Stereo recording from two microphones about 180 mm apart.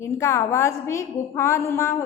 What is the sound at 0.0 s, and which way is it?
A woman's voice, 15° left (ahead or behind).